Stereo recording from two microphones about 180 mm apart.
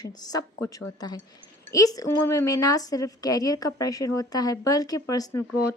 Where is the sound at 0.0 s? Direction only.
20° left (ahead or behind).